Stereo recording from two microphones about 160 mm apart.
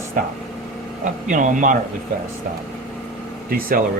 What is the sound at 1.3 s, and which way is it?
Speech, 55° right (ahead or behind).